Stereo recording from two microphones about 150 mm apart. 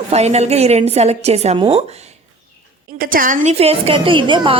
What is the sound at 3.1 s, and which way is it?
A woman's voice, 65° right (ahead or behind).